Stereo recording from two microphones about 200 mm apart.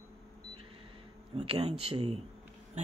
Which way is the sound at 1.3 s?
30° right (ahead or behind).